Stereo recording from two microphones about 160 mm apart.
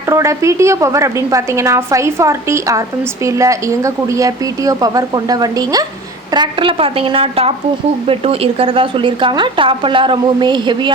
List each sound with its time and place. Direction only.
0.0 s a woman's voice: 20° right (ahead or behind)